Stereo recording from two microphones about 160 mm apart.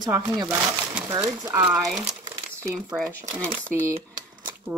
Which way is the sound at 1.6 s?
5° right (ahead or behind).